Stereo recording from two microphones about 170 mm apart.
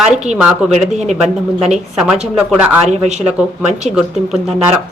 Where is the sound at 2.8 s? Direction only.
40° right (ahead or behind).